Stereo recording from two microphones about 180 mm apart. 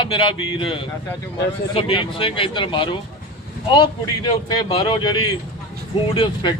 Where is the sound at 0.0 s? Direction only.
25° left (ahead or behind).